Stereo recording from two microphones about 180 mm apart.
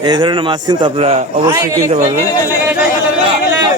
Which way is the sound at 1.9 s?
40° right (ahead or behind).